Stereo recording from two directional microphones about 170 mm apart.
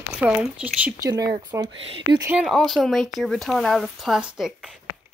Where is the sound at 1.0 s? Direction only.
25° right (ahead or behind).